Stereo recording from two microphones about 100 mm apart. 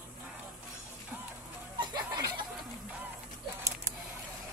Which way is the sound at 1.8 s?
40° right (ahead or behind).